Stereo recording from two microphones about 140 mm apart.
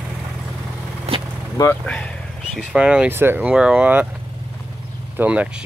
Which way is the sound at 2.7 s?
5° right (ahead or behind).